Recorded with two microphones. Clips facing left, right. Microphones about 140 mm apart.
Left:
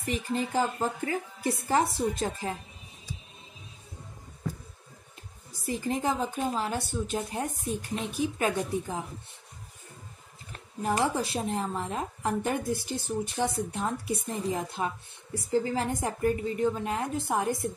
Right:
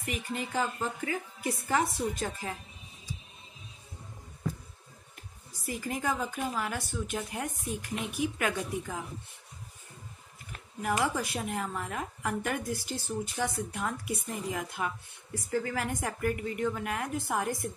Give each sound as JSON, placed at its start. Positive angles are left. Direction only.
{"t": 0.0, "sound": "speech", "side_deg": 35}
{"t": 5.7, "sound": "speech", "side_deg": 30}
{"t": 10.5, "sound": "speech", "side_deg": 30}